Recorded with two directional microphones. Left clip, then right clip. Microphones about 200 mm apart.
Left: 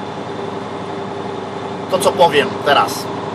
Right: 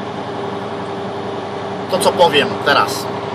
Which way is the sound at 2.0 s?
10° right (ahead or behind).